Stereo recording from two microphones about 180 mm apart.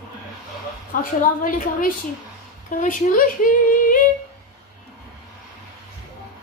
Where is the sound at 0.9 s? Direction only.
50° left (ahead or behind).